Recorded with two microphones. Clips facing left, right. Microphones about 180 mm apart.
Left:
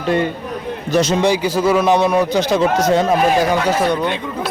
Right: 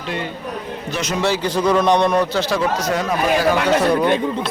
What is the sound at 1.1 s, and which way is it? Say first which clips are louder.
A man's voice: left 4 dB; 15° left (ahead or behind).